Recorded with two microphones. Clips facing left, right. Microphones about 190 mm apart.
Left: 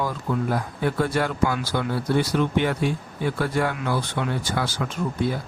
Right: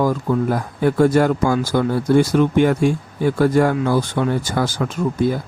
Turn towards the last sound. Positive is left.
turn(degrees=-45)  # may be behind; listen again after turning